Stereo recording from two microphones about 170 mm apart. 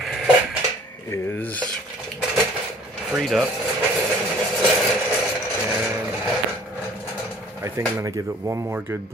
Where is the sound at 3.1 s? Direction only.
Centre (ahead or behind).